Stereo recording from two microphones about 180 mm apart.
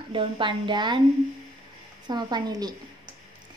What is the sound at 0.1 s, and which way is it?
Speech, 25° right (ahead or behind).